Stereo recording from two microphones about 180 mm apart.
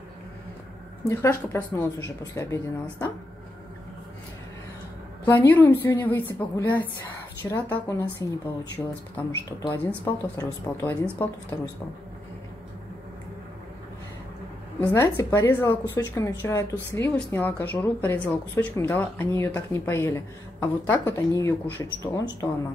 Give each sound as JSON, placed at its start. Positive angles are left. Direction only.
{"t": 1.0, "sound": "speech", "side_deg": 15}
{"t": 5.2, "sound": "speech", "side_deg": 10}
{"t": 14.8, "sound": "speech", "side_deg": 10}